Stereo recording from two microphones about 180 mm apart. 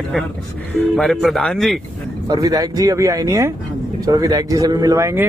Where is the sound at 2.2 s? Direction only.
20° right (ahead or behind).